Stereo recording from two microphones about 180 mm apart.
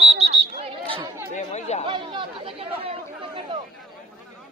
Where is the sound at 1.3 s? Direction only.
40° left (ahead or behind).